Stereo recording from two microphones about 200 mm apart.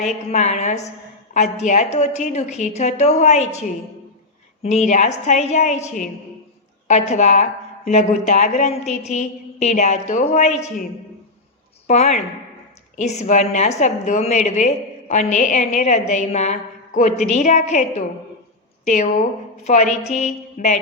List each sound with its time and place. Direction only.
0.3 s a woman's voice: 35° left (ahead or behind)
4.6 s a woman's voice: 35° left (ahead or behind)
11.9 s a woman's voice: 35° left (ahead or behind)